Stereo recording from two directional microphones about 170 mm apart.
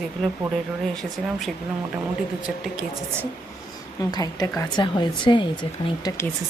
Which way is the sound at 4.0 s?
20° left (ahead or behind).